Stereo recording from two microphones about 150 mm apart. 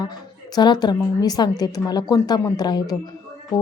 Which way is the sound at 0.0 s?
25° left (ahead or behind).